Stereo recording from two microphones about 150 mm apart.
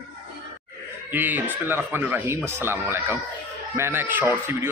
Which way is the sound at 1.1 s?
10° right (ahead or behind).